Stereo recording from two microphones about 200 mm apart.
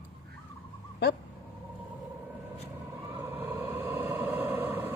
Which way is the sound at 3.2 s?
10° right (ahead or behind).